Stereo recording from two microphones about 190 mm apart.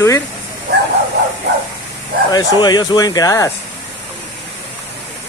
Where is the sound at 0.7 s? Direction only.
60° right (ahead or behind).